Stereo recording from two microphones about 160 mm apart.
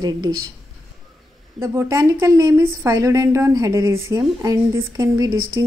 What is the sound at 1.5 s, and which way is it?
A woman's voice, 15° right (ahead or behind).